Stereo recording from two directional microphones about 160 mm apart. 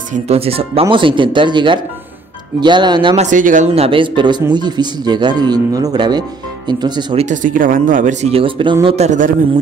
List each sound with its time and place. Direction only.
0.1 s a man's voice: 40° right (ahead or behind)
3.2 s speech: 55° right (ahead or behind)
3.7 s a man's voice: 35° right (ahead or behind)
7.2 s speech: 50° right (ahead or behind)